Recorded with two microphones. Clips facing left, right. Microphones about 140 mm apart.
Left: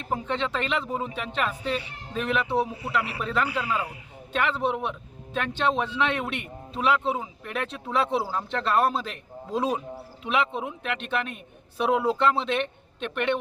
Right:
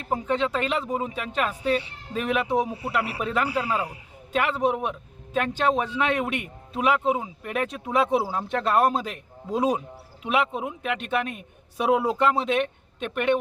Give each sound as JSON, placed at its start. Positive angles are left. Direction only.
{"t": 0.1, "sound": "a man's voice", "side_deg": -10}
{"t": 3.5, "sound": "a man's voice", "side_deg": -30}
{"t": 4.3, "sound": "a man's voice", "side_deg": -5}